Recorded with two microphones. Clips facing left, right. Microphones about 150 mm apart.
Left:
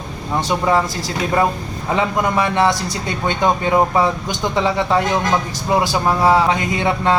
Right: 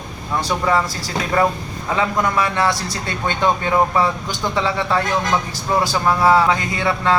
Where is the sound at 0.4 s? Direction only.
20° left (ahead or behind).